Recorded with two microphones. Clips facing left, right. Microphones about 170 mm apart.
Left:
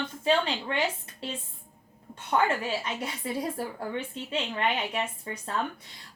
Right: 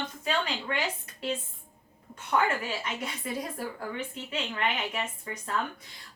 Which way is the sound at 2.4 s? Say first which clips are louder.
Left 2 dB; 30° left (ahead or behind).